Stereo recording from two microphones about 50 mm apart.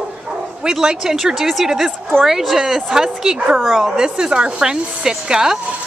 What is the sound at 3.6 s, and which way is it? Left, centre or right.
Speech, centre.